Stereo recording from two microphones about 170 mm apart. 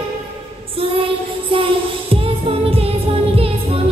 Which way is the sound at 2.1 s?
30° right (ahead or behind).